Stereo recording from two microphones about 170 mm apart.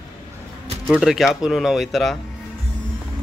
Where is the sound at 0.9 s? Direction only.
Centre (ahead or behind).